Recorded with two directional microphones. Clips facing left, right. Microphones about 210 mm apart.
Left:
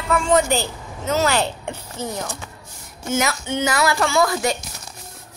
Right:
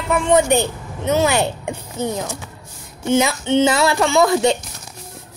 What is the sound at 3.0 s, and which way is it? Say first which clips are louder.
Speech: right 5 dB; 25° right (ahead or behind).